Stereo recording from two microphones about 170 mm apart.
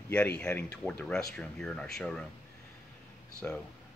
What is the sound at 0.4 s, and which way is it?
Speech, 10° left (ahead or behind).